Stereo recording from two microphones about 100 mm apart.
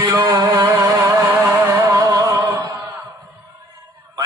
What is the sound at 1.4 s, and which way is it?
Music, 20° right (ahead or behind).